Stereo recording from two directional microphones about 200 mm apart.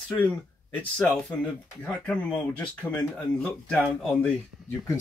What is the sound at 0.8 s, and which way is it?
Speech, 5° left (ahead or behind).